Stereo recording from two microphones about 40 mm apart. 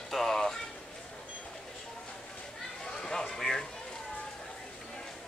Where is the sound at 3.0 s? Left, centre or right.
Centre.